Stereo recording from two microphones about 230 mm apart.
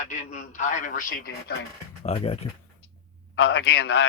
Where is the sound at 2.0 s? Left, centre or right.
Left.